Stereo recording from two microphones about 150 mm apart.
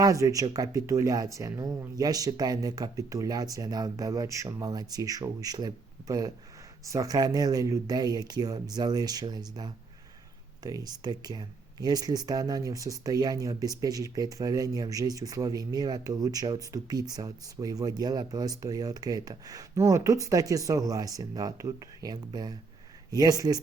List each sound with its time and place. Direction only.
0.0 s speech: 20° right (ahead or behind)